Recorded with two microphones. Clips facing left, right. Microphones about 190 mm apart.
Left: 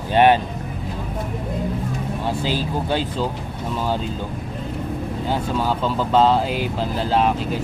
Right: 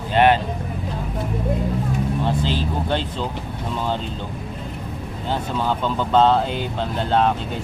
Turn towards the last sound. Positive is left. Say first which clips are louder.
# even
turn(degrees=5)  # may be behind; listen again after turning